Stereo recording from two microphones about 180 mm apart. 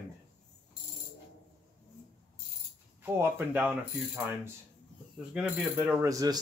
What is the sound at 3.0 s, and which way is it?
Speech, 10° right (ahead or behind).